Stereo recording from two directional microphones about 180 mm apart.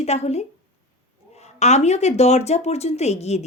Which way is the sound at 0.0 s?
35° left (ahead or behind).